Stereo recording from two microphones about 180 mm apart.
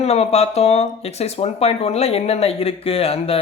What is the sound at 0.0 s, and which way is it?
Speech, 35° left (ahead or behind).